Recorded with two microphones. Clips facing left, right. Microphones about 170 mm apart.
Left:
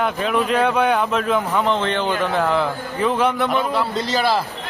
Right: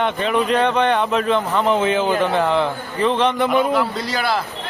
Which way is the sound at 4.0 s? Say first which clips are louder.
Left 2 dB; 30° left (ahead or behind).